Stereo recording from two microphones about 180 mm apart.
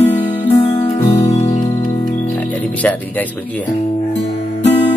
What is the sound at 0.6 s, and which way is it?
Music, 25° left (ahead or behind).